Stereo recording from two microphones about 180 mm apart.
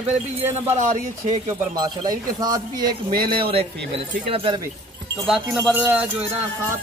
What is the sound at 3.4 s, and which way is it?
Speech, 30° right (ahead or behind).